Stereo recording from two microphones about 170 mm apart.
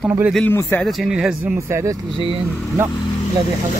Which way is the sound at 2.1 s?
30° right (ahead or behind).